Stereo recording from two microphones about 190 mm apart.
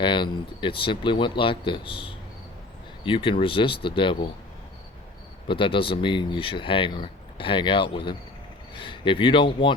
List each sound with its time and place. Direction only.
0.0 s speech: 25° left (ahead or behind)
5.5 s speech: 25° left (ahead or behind)